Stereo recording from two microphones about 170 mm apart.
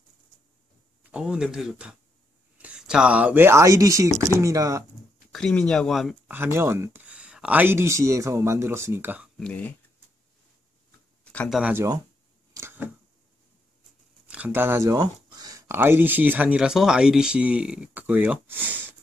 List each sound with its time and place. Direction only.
1.0 s speech: 5° right (ahead or behind)
5.3 s speech: 5° left (ahead or behind)
6.3 s speech: 15° right (ahead or behind)
9.4 s speech: 10° left (ahead or behind)
11.3 s speech: centre (ahead or behind)
11.7 s speech: 15° right (ahead or behind)
12.5 s a sound: 15° right (ahead or behind)
14.2 s speech: 10° right (ahead or behind)